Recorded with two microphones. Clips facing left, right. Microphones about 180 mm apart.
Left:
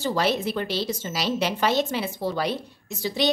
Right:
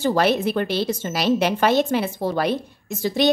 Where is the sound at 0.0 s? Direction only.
55° right (ahead or behind).